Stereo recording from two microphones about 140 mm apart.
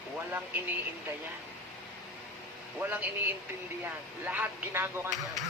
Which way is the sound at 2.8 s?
15° right (ahead or behind).